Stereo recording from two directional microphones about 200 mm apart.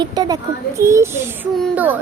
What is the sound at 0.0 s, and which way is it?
A woman's voice, 20° right (ahead or behind).